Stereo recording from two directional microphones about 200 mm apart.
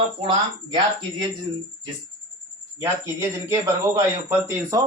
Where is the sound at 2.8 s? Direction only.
15° right (ahead or behind).